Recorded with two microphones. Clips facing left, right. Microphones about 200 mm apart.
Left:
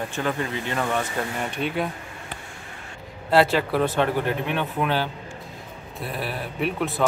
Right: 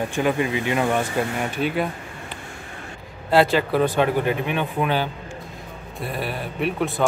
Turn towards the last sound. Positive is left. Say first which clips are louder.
# right 2 dB
turn(degrees=0)  # may be behind; listen again after turning